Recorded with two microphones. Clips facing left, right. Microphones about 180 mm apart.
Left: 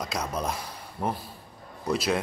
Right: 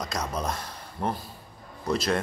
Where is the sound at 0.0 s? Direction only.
5° left (ahead or behind).